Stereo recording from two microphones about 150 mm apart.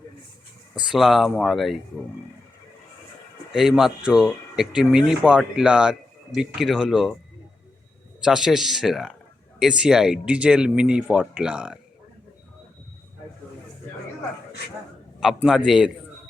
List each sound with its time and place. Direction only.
0.9 s speech: centre (ahead or behind)
3.5 s speech: 5° right (ahead or behind)
8.2 s speech: 5° right (ahead or behind)
15.4 s speech: 5° right (ahead or behind)